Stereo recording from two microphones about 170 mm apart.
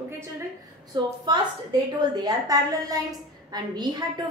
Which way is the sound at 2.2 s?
20° right (ahead or behind).